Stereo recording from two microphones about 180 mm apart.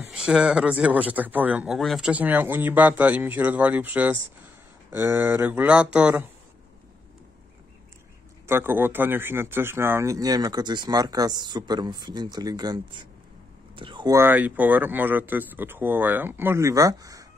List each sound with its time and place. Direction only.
0.1 s speech: 5° right (ahead or behind)
8.5 s speech: 15° right (ahead or behind)